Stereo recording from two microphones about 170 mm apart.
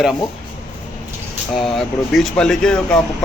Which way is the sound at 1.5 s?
Centre (ahead or behind).